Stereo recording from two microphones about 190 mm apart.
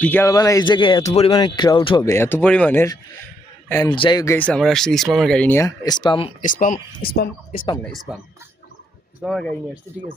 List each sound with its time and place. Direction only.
0.0 s speech: 10° left (ahead or behind); by 2.0 s 25° left (ahead or behind)
2.0 s a man's voice: 10° left (ahead or behind)
4.4 s speech: 5° left (ahead or behind); by 6.3 s 25° left (ahead or behind)
6.4 s speech: 40° left (ahead or behind)
9.2 s speech: centre (ahead or behind)